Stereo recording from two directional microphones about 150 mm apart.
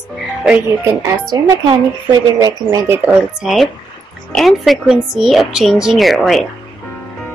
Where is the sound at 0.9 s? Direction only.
25° right (ahead or behind).